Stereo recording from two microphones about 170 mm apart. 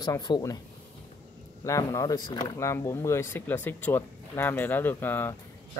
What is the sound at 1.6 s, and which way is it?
Speech, 20° left (ahead or behind).